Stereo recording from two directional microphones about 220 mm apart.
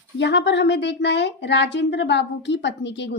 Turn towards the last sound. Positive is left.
turn(degrees=55)  # may be behind; listen again after turning